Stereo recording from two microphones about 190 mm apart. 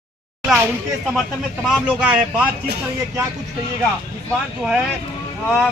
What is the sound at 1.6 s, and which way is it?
Speech, 5° right (ahead or behind).